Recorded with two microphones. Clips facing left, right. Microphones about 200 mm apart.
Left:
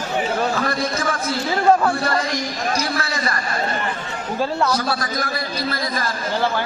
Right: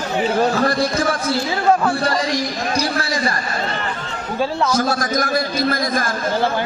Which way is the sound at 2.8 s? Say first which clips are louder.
Right 3 dB; 30° right (ahead or behind).